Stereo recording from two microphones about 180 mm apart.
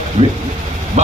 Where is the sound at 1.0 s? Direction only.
40° right (ahead or behind).